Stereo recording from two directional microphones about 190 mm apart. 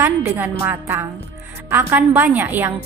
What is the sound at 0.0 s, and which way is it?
A woman's voice, 10° right (ahead or behind).